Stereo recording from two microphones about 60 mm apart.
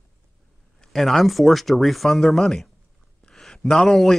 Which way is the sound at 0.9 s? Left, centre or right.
Centre.